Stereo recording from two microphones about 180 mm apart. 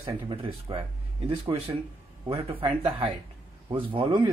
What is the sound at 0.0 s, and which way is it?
Speech, 30° right (ahead or behind).